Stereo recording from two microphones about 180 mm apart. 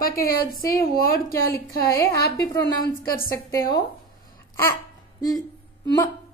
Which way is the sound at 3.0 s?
55° left (ahead or behind).